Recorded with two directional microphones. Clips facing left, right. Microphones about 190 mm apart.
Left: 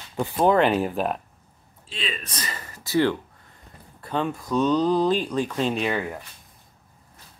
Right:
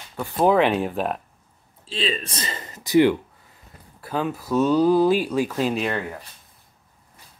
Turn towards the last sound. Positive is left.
turn(degrees=0)  # may be behind; listen again after turning